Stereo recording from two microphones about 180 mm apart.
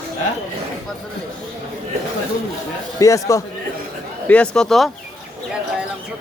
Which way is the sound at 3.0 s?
20° left (ahead or behind).